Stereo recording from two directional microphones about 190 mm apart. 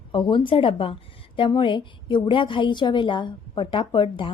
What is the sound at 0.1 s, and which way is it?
A woman's voice, 25° left (ahead or behind).